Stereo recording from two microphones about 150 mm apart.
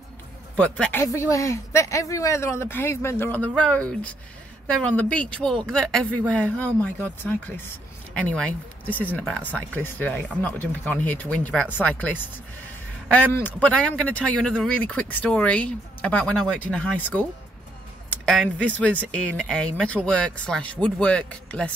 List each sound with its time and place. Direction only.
0.6 s speech: 10° left (ahead or behind)
1.0 s speech: 20° left (ahead or behind)